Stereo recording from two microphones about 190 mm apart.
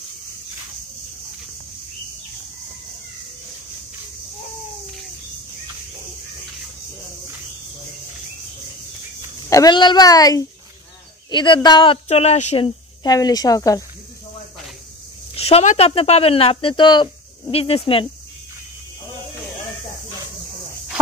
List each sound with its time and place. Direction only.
9.5 s speech: 20° left (ahead or behind)
15.3 s speech: 30° left (ahead or behind)